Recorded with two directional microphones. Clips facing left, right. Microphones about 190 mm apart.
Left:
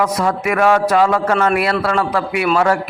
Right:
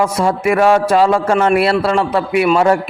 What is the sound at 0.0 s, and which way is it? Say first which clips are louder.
A man's voice: right 2 dB; 25° right (ahead or behind).